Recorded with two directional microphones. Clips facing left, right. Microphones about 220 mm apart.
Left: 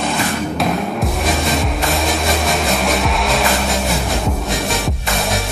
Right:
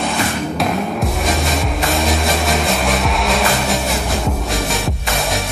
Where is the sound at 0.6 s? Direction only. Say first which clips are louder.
Right 1 dB; centre (ahead or behind).